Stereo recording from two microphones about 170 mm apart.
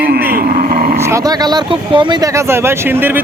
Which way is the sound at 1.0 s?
20° right (ahead or behind).